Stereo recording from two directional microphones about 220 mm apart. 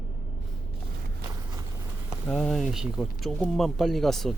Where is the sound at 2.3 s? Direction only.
5° left (ahead or behind).